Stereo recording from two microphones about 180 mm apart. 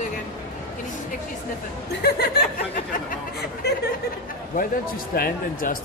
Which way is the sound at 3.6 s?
65° left (ahead or behind).